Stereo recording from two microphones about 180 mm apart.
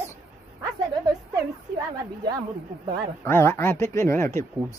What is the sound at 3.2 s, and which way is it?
A man's voice, 15° left (ahead or behind).